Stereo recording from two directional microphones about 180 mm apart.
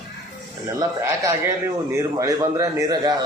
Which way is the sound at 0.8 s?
20° right (ahead or behind).